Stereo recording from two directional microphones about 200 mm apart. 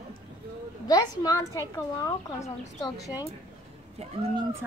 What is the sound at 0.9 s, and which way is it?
Speech, 20° left (ahead or behind).